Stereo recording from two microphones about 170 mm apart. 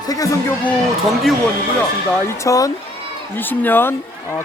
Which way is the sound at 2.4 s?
20° left (ahead or behind).